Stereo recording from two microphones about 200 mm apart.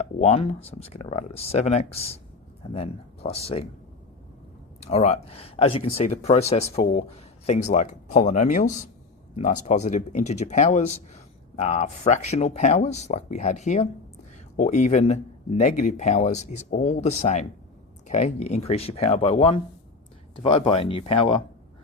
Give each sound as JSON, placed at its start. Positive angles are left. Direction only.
{"t": 0.2, "sound": "speech", "side_deg": 30}
{"t": 4.8, "sound": "speech", "side_deg": 30}